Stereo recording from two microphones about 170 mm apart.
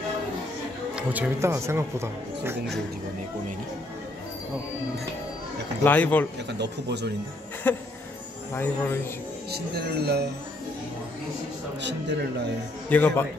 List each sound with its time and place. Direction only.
0.9 s speech: 10° right (ahead or behind)
5.9 s a man's voice: 10° left (ahead or behind)
6.6 s speech: 85° right
7.7 s a man's voice: 10° left (ahead or behind)
9.5 s speech: 70° right (ahead or behind)
11.8 s a man's voice: 90° right
12.9 s a man's voice: 10° left (ahead or behind)